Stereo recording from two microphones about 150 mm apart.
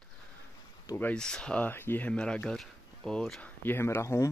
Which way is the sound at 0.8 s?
15° left (ahead or behind).